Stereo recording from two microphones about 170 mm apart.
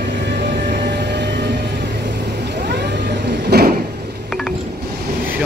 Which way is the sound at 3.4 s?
70° right (ahead or behind).